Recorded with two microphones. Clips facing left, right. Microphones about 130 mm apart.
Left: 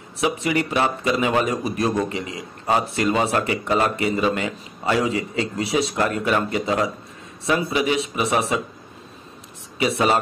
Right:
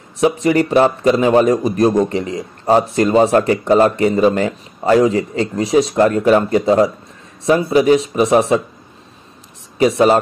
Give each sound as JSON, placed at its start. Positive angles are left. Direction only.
{"t": 0.2, "sound": "speech", "side_deg": -40}
{"t": 9.8, "sound": "speech", "side_deg": -35}